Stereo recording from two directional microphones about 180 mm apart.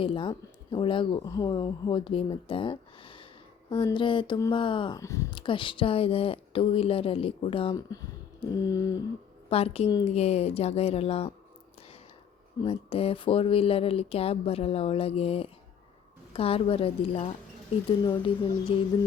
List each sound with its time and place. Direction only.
0.0 s speech: 30° left (ahead or behind)
7.9 s a sound: 20° left (ahead or behind)
9.5 s speech: 35° left (ahead or behind)
12.6 s speech: 30° left (ahead or behind)